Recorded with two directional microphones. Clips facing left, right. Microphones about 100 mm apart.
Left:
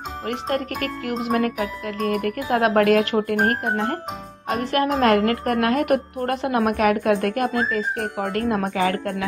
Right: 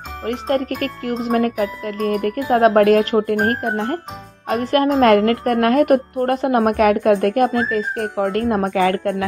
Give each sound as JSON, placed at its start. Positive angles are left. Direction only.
{"t": 0.2, "sound": "a woman's voice", "side_deg": -40}